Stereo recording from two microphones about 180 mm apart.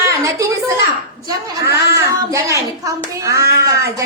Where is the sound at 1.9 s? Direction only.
15° right (ahead or behind).